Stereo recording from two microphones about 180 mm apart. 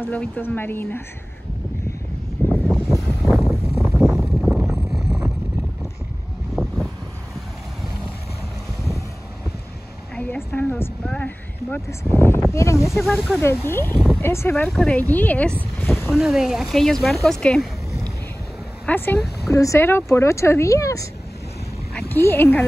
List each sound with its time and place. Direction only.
0.0 s speech: 10° left (ahead or behind)
2.4 s vehicle: 10° left (ahead or behind)
3.1 s a sound: centre (ahead or behind)
6.5 s vehicle: centre (ahead or behind)
10.1 s a sound: 10° left (ahead or behind)
12.5 s speech: 15° left (ahead or behind)
13.9 s a sound: centre (ahead or behind)
14.2 s speech: 15° left (ahead or behind)
15.8 s boat: 10° left (ahead or behind)
16.1 s speech: 5° right (ahead or behind)
18.9 s speech: 10° left (ahead or behind)